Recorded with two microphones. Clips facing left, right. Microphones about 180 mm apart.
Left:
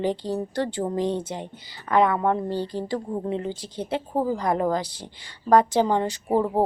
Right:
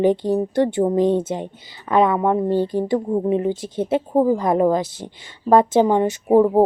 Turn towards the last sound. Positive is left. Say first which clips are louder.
# right 8 dB
turn(degrees=-20)  # may be behind; listen again after turning